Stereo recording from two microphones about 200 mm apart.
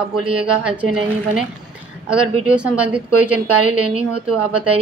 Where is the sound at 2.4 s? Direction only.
5° right (ahead or behind).